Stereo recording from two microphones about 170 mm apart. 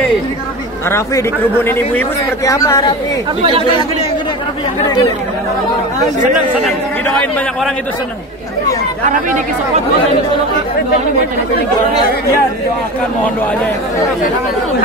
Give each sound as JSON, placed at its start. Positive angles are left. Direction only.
{"t": 0.8, "sound": "a man's voice", "side_deg": 15}
{"t": 7.2, "sound": "a man's voice", "side_deg": 10}